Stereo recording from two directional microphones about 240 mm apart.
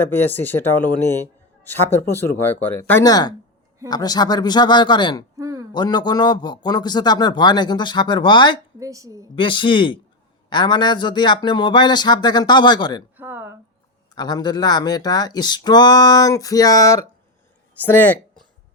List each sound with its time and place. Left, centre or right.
0.0 s speech: centre
5.4 s a sound: centre
5.7 s speech: centre
8.8 s a woman's voice: centre
9.3 s speech: left
13.1 s a sound: centre
14.2 s a woman's voice: centre